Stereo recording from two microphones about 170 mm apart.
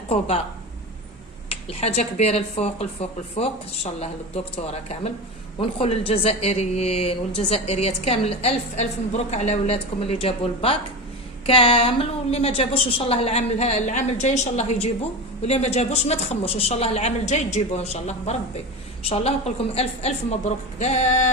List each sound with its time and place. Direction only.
0.1 s speech: 35° left (ahead or behind)
1.5 s speech: 35° left (ahead or behind)